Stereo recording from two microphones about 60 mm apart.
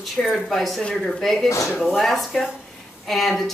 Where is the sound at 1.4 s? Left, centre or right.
Left.